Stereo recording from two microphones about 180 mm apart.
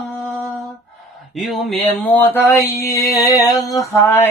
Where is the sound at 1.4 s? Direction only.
Centre (ahead or behind).